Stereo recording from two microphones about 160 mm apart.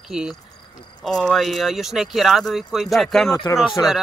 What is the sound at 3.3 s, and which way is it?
Speech, 20° left (ahead or behind).